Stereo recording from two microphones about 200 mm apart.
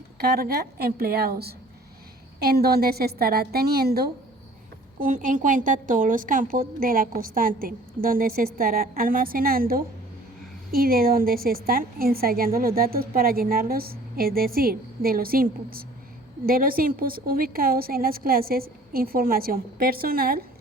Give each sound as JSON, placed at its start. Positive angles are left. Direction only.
{"t": 0.3, "sound": "a woman's voice", "side_deg": -50}
{"t": 4.9, "sound": "a woman's voice", "side_deg": -40}